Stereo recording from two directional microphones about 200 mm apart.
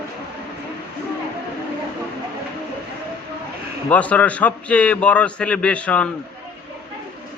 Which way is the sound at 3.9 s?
5° left (ahead or behind).